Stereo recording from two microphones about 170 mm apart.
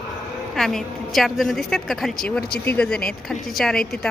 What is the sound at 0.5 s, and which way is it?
A woman's voice, 5° left (ahead or behind).